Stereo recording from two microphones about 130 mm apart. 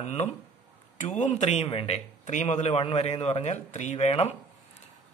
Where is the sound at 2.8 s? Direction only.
50° left (ahead or behind).